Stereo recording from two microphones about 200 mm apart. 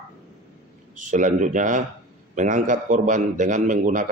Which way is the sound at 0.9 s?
40° right (ahead or behind).